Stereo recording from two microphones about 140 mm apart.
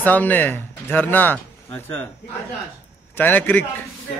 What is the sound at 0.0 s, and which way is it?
Speech, 10° left (ahead or behind).